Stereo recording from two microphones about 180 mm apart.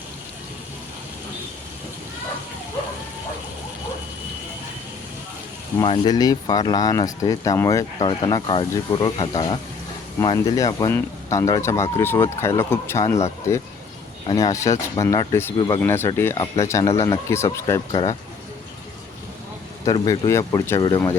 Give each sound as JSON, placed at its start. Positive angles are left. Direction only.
{"t": 5.7, "sound": "speech", "side_deg": 25}
{"t": 14.3, "sound": "speech", "side_deg": 20}
{"t": 19.8, "sound": "speech", "side_deg": 20}